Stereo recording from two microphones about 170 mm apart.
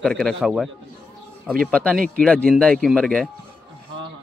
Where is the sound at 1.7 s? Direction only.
10° left (ahead or behind).